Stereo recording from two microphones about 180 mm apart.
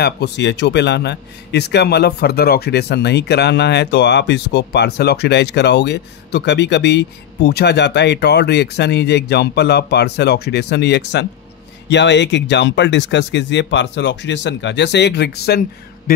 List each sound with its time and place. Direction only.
0.0 s a man's voice: 70° left (ahead or behind)